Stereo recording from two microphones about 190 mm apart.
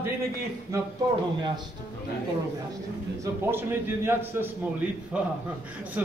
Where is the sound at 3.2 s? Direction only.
10° right (ahead or behind).